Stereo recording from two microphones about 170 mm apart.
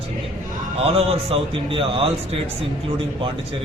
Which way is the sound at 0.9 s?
35° right (ahead or behind).